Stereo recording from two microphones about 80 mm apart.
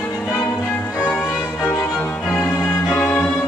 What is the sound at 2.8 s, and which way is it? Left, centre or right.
Music, centre.